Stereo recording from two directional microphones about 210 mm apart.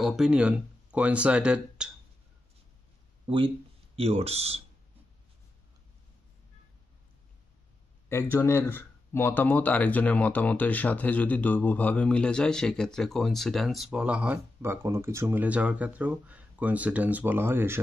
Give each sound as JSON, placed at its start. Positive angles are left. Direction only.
{"t": 0.0, "sound": "speech", "side_deg": 0}
{"t": 3.3, "sound": "speech", "side_deg": -25}
{"t": 8.1, "sound": "speech", "side_deg": 10}